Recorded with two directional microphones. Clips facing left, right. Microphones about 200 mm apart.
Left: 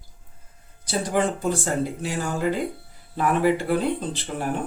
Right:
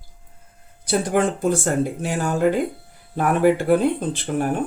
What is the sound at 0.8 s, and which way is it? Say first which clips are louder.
Speech: right 4 dB; 55° right (ahead or behind).